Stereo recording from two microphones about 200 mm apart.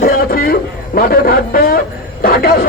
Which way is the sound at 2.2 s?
45° left (ahead or behind).